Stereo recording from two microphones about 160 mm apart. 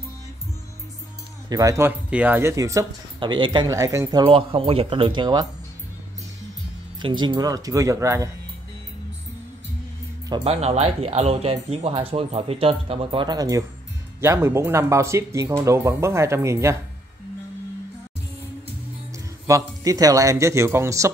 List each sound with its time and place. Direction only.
1.5 s speech: 20° right (ahead or behind)
3.6 s speech: 20° right (ahead or behind)
7.0 s speech: 30° right (ahead or behind)
10.3 s speech: 40° right (ahead or behind); by 16.7 s 15° right (ahead or behind)
19.1 s speech: 20° right (ahead or behind)